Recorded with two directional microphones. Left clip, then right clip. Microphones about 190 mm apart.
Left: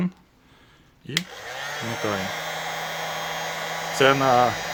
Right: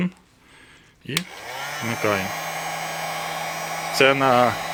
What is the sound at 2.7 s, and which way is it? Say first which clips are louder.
Hair dryer: right 1 dB; 10° right (ahead or behind).